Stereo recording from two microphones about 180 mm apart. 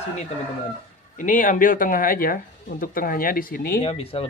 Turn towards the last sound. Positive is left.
turn(degrees=50)  # may be behind; listen again after turning